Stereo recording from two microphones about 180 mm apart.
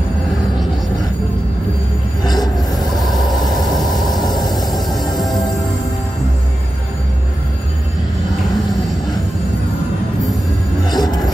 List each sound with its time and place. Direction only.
2.2 s train wheels squealing: 20° left (ahead or behind)
3.9 s vehicle: centre (ahead or behind)
5.1 s music: centre (ahead or behind)
10.9 s music: 20° left (ahead or behind)